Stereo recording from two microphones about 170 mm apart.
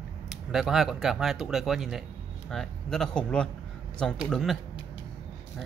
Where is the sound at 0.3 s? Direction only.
Centre (ahead or behind).